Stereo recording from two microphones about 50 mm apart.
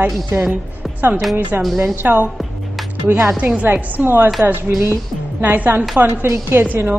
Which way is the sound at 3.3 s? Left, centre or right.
Right.